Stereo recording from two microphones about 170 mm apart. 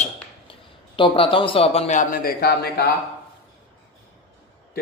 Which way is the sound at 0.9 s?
30° left (ahead or behind).